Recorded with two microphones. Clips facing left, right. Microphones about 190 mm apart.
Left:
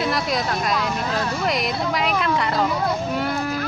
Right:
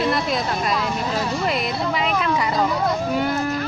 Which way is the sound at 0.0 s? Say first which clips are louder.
Right 1 dB; centre (ahead or behind).